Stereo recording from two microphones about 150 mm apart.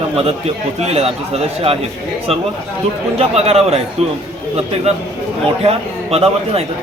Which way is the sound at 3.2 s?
45° right (ahead or behind).